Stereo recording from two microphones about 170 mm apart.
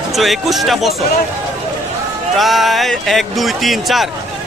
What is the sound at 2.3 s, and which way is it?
Speech, centre (ahead or behind).